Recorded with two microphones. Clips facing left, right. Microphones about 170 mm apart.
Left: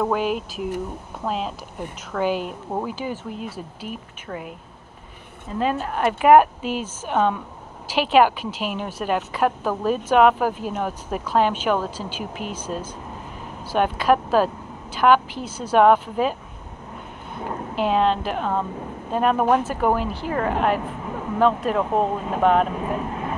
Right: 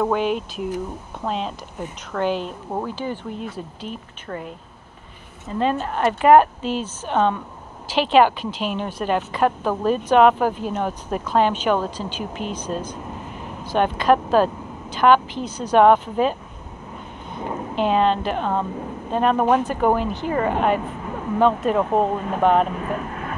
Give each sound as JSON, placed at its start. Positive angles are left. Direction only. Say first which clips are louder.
{"t": 0.0, "sound": "speech", "louder": "right 1 dB", "side_deg": 5}
{"t": 5.5, "sound": "speech", "louder": "right 2 dB", "side_deg": 5}
{"t": 17.7, "sound": "speech", "louder": "right 1 dB", "side_deg": 0}
{"t": 22.8, "sound": "speech", "louder": "left 1 dB", "side_deg": 15}